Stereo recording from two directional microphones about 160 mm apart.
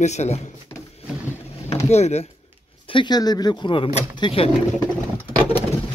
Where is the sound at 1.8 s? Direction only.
40° left (ahead or behind).